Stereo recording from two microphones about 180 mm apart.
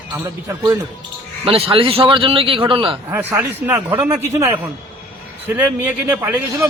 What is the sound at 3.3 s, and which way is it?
A man's voice, 15° right (ahead or behind).